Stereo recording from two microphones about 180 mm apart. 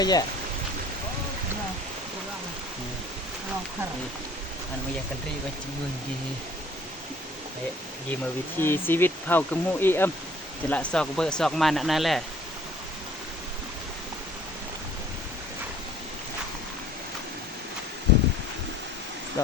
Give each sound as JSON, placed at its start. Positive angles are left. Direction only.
{"t": 0.0, "sound": "speech", "side_deg": 20}
{"t": 8.6, "sound": "speech", "side_deg": 10}